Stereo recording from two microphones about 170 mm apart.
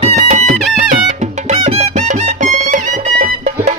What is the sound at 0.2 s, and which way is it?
Music, 45° right (ahead or behind).